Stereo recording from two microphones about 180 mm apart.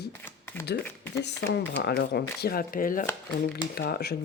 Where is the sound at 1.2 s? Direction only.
70° left (ahead or behind).